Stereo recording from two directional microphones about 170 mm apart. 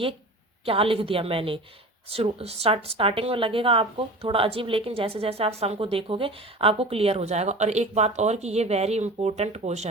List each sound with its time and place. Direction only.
0.6 s a woman's voice: 35° right (ahead or behind)